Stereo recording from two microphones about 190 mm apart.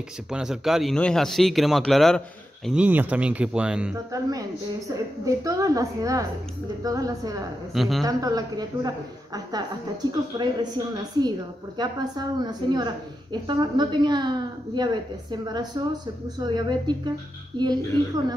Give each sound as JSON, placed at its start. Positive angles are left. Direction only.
{"t": 0.3, "sound": "speech", "side_deg": -5}
{"t": 3.9, "sound": "a woman's voice", "side_deg": -20}
{"t": 7.7, "sound": "speech", "side_deg": 0}
{"t": 8.0, "sound": "a woman's voice", "side_deg": -20}
{"t": 15.4, "sound": "a woman's voice", "side_deg": -20}